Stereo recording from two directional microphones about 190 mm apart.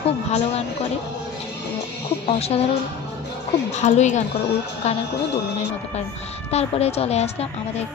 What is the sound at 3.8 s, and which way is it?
Speech, 40° left (ahead or behind).